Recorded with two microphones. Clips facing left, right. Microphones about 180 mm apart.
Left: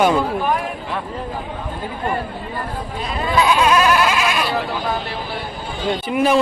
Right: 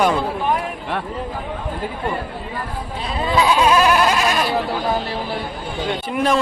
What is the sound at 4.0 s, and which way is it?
Goat, 40° right (ahead or behind).